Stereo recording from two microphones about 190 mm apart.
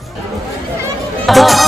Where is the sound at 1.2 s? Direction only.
Centre (ahead or behind).